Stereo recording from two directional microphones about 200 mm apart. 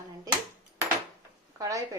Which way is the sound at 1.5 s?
15° right (ahead or behind).